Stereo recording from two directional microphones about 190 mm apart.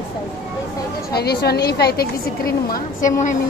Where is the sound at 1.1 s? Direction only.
55° left (ahead or behind).